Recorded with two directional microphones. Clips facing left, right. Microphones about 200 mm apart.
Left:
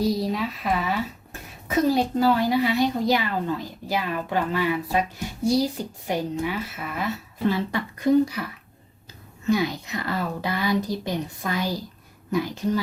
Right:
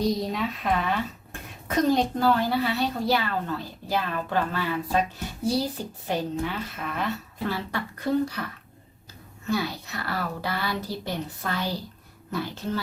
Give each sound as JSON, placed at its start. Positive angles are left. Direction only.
{"t": 0.0, "sound": "a woman's voice", "side_deg": 0}
{"t": 9.5, "sound": "a woman's voice", "side_deg": 15}